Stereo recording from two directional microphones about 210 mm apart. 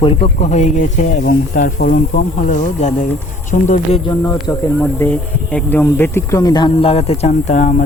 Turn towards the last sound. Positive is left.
turn(degrees=35)  # may be behind; listen again after turning